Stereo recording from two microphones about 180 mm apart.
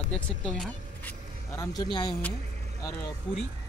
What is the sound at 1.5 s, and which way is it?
Speech, 20° left (ahead or behind).